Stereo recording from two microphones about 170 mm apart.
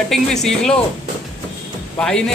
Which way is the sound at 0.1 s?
5° left (ahead or behind).